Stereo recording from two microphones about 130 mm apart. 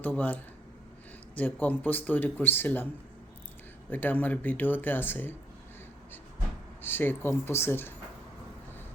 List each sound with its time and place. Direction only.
0.0 s speech: 10° left (ahead or behind)
3.8 s speech: 15° left (ahead or behind)
6.8 s speech: 15° left (ahead or behind)